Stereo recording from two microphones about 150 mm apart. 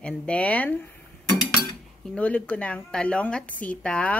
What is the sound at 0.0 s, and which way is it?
Speech, 10° left (ahead or behind).